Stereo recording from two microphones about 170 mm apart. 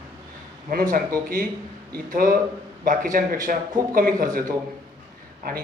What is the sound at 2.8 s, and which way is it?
A man's voice, 50° right (ahead or behind).